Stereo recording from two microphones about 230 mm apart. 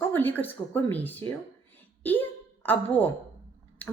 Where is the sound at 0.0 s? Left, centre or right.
Centre.